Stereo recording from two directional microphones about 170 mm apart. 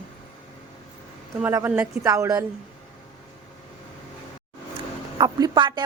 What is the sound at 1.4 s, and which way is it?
A woman's voice, 10° right (ahead or behind).